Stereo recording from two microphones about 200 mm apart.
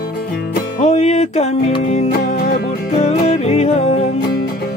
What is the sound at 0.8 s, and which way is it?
Music, 35° left (ahead or behind).